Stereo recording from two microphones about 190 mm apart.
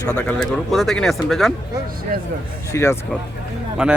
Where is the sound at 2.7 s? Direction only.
15° left (ahead or behind).